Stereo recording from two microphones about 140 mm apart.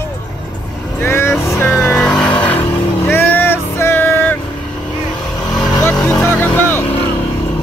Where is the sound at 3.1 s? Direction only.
15° left (ahead or behind).